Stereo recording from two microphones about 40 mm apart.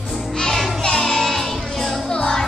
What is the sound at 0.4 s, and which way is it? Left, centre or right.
Music, centre.